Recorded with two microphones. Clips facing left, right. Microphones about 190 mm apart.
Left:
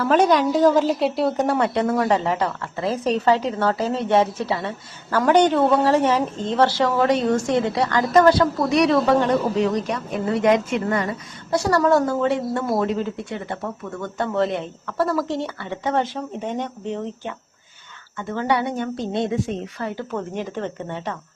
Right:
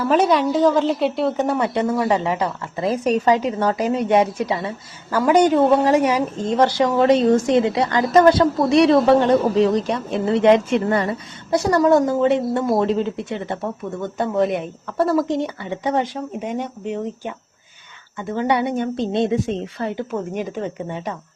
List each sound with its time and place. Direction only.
0.0 s a woman's voice: 5° right (ahead or behind); by 11.1 s 30° right (ahead or behind)
11.5 s a woman's voice: 20° right (ahead or behind)
20.1 s a woman's voice: 10° right (ahead or behind)